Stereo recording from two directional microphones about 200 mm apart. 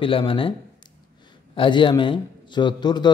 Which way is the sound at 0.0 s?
25° left (ahead or behind).